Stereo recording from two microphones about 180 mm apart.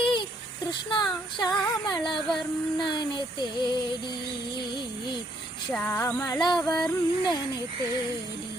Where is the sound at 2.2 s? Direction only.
Centre (ahead or behind).